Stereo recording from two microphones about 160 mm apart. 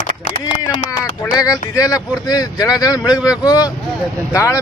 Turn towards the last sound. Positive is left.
turn(degrees=20)  # may be behind; listen again after turning